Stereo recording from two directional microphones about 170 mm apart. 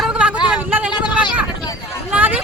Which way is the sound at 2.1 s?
10° right (ahead or behind).